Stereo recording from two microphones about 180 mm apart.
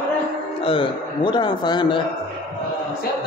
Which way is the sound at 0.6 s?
30° left (ahead or behind).